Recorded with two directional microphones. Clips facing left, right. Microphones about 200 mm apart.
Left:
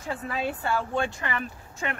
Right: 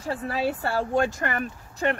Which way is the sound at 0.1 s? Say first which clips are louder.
Right 4 dB; 35° right (ahead or behind).